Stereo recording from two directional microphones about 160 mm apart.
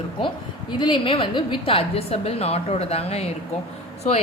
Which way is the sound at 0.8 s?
30° left (ahead or behind).